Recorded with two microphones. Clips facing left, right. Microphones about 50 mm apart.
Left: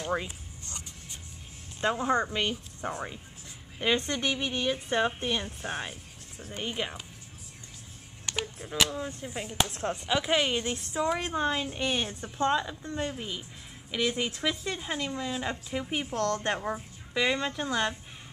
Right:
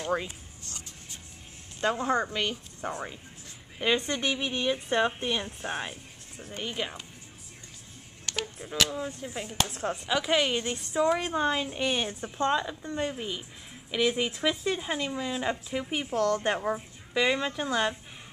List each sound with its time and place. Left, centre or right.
0.0 s a woman's voice: centre
1.8 s a woman's voice: centre
6.6 s speech: centre
8.3 s a sound: centre
8.9 s a woman's voice: centre
9.7 s speech: right
10.0 s a woman's voice: centre